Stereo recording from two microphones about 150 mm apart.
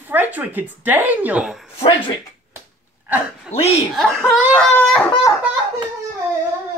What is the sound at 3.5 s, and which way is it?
Speech, 45° left (ahead or behind).